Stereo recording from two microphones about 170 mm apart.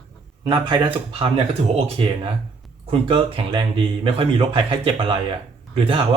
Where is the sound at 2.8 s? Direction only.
30° right (ahead or behind).